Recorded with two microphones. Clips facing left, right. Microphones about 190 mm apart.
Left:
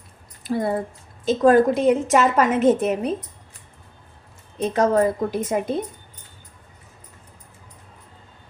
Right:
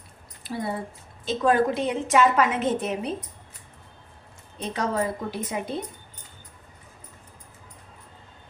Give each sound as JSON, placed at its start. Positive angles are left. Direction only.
{"t": 0.4, "sound": "a woman's voice", "side_deg": 50}
{"t": 4.7, "sound": "a woman's voice", "side_deg": 50}